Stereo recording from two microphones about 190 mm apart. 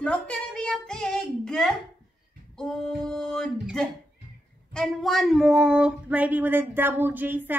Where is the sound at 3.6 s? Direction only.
Centre (ahead or behind).